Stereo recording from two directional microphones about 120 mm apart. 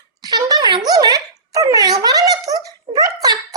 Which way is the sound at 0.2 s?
30° right (ahead or behind).